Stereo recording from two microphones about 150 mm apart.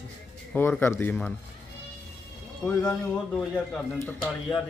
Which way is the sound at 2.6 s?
25° left (ahead or behind).